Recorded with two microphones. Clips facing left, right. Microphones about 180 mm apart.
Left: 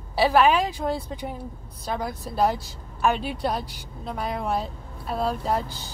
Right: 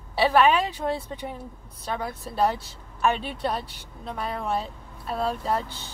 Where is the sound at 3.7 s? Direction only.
35° left (ahead or behind).